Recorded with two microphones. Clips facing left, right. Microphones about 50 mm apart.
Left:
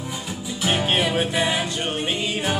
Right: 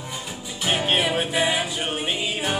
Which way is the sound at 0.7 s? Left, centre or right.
Centre.